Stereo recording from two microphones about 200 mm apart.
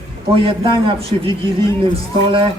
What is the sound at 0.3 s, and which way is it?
Speech, 25° right (ahead or behind).